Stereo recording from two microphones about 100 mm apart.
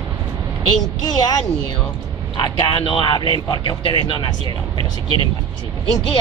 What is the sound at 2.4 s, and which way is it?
Speech, 55° left (ahead or behind).